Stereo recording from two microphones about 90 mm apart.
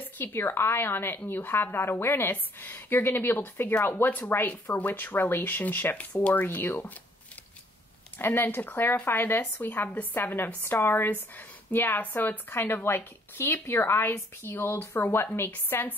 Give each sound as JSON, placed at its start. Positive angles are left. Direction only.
{"t": 0.2, "sound": "speech", "side_deg": 25}
{"t": 8.2, "sound": "speech", "side_deg": 25}